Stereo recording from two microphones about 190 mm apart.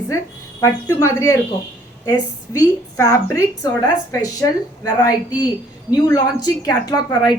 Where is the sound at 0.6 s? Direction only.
15° left (ahead or behind).